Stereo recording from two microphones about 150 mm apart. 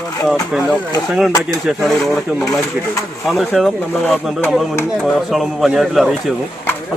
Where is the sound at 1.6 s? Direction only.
Centre (ahead or behind).